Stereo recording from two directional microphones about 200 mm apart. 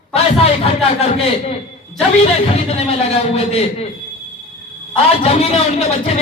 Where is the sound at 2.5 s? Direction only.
30° left (ahead or behind).